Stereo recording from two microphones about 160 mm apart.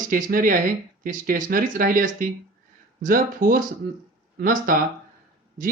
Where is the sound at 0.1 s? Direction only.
60° right (ahead or behind).